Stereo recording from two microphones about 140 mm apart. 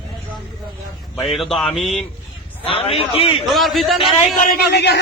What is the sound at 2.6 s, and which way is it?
Speech, 45° left (ahead or behind).